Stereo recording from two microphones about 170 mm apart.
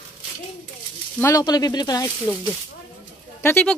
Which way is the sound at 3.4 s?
10° left (ahead or behind).